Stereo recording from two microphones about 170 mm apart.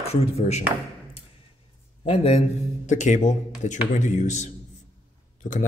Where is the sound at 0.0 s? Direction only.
35° left (ahead or behind).